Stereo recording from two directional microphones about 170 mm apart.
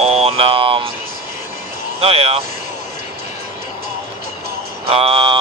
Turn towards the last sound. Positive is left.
turn(degrees=-30)  # may be behind; listen again after turning